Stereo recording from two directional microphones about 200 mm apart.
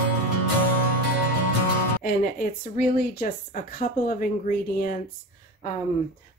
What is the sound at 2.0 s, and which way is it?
Speech, 45° left (ahead or behind).